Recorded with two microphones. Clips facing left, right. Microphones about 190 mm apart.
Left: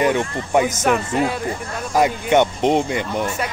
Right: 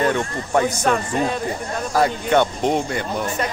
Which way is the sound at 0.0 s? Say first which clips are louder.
Left 2 dB; 15° left (ahead or behind).